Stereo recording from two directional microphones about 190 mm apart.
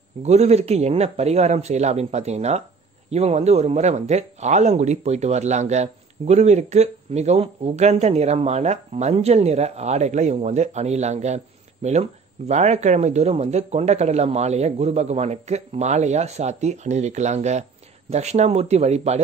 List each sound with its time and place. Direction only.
0.2 s speech: 35° right (ahead or behind)